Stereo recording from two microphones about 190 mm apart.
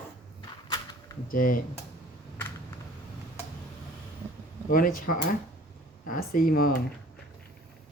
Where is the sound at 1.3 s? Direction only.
45° left (ahead or behind).